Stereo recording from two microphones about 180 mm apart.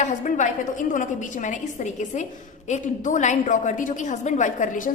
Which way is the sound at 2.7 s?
40° left (ahead or behind).